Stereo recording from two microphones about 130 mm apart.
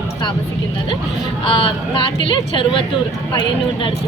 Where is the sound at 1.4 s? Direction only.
40° left (ahead or behind).